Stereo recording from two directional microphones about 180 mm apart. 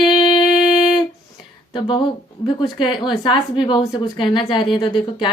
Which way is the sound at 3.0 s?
25° left (ahead or behind).